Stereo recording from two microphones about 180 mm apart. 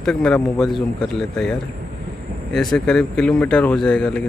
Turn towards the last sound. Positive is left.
turn(degrees=5)  # may be behind; listen again after turning